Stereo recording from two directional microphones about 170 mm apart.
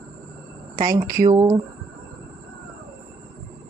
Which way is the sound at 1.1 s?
55° right (ahead or behind).